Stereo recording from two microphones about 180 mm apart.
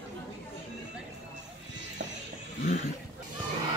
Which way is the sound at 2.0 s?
85° right.